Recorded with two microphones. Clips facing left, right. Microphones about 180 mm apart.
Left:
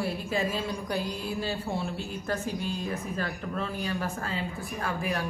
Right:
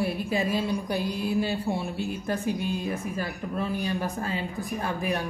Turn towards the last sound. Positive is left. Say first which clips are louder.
# right 3 dB
turn(degrees=-20)  # may be behind; listen again after turning